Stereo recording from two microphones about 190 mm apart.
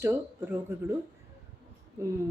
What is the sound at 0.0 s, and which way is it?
Speech, 10° right (ahead or behind).